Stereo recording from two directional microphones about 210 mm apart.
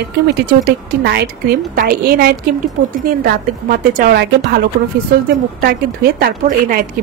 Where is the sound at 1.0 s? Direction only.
50° right (ahead or behind).